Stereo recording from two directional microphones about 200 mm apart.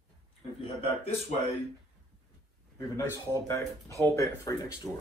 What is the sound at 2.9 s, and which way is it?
Speech, 15° left (ahead or behind).